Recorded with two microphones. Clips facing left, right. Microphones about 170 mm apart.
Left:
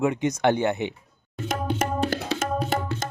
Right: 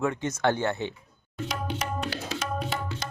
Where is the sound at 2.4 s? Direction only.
45° left (ahead or behind).